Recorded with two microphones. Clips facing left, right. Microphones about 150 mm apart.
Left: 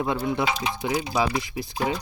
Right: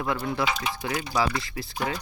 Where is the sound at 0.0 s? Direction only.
20° left (ahead or behind).